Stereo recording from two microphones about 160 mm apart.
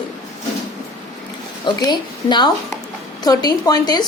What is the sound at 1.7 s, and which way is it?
A woman's voice, 30° left (ahead or behind).